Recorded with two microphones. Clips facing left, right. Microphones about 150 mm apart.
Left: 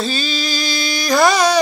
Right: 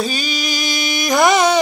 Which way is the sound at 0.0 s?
15° right (ahead or behind).